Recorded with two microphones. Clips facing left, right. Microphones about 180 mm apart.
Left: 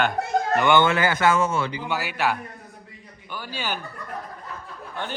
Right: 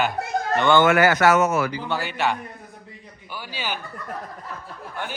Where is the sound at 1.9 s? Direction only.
5° left (ahead or behind).